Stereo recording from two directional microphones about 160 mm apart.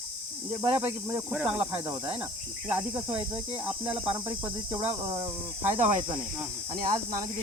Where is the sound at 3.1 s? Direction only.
35° right (ahead or behind).